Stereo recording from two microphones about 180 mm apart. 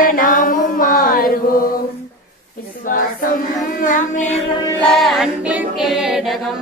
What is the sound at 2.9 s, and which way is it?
Choir, 50° left (ahead or behind).